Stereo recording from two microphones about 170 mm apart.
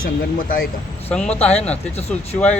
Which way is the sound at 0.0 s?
60° left (ahead or behind).